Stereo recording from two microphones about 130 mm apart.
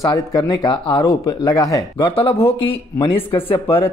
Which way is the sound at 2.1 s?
45° left (ahead or behind).